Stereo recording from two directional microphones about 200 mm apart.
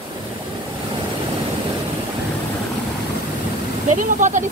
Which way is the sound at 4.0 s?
40° right (ahead or behind).